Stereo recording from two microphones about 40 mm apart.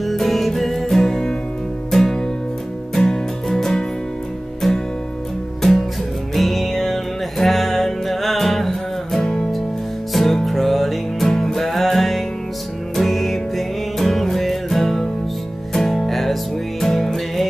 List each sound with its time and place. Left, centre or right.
0.0 s music: centre